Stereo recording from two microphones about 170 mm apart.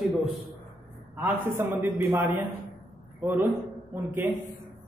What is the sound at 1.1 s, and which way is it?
A man's voice, 15° right (ahead or behind).